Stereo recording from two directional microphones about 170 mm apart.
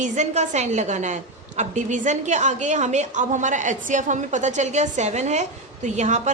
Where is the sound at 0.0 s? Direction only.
45° right (ahead or behind).